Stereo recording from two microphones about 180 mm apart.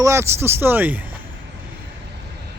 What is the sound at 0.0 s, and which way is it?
Speech, 15° right (ahead or behind).